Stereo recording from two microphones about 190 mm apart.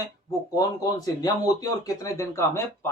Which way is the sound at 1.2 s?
20° left (ahead or behind).